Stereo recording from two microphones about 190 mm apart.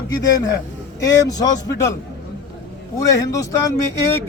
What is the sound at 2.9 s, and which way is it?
Speech, 15° left (ahead or behind).